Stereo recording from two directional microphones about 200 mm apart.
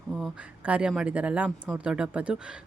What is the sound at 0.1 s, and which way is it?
Speech, centre (ahead or behind).